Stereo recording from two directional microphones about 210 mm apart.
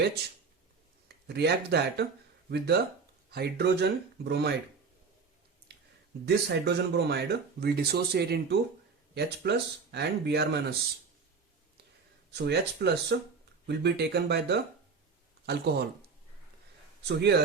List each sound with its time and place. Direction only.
1.0 s speech: 50° right (ahead or behind)
5.7 s a sound: 50° right (ahead or behind)
6.2 s speech: 50° right (ahead or behind)
12.3 s speech: 55° right (ahead or behind)
17.0 s a man's voice: 55° right (ahead or behind)